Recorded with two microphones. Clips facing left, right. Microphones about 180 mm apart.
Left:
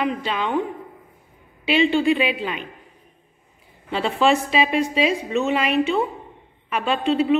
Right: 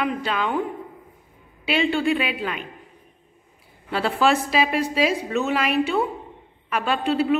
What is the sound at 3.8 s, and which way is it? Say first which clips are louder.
A woman's voice: left 1 dB; centre (ahead or behind).